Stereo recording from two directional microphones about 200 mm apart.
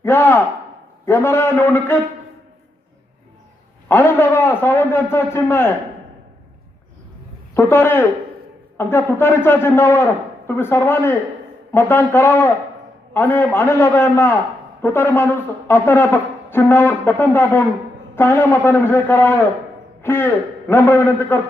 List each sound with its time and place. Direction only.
0.0 s speech: 10° left (ahead or behind)
3.8 s speech: 10° left (ahead or behind)
7.5 s speech: 10° left (ahead or behind)